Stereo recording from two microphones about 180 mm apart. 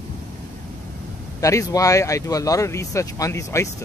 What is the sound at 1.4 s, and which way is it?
Speech, 15° left (ahead or behind).